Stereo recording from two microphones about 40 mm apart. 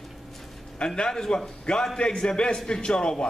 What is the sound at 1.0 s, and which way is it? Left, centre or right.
A man's voice, centre.